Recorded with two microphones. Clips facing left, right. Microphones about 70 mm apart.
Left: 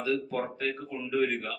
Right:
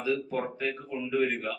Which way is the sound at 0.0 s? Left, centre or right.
Centre.